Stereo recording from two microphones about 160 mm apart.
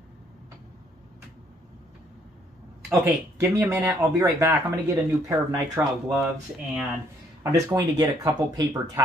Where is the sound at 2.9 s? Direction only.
20° right (ahead or behind).